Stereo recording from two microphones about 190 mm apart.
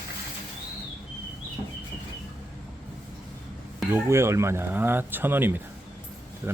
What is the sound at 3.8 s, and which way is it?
Speech, 10° right (ahead or behind).